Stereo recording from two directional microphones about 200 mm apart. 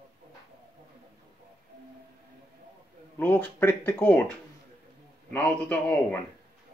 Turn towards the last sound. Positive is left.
turn(degrees=10)  # may be behind; listen again after turning